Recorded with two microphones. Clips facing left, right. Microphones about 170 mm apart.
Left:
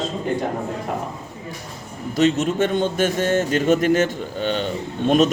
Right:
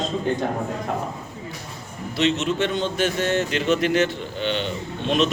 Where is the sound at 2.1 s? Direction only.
45° left (ahead or behind).